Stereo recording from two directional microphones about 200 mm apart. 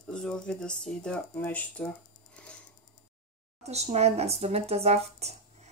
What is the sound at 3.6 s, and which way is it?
Speech, 35° right (ahead or behind).